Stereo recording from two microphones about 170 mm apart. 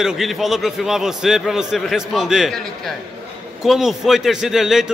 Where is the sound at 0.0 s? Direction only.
Centre (ahead or behind).